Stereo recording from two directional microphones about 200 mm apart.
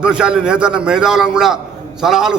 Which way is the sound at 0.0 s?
5° right (ahead or behind).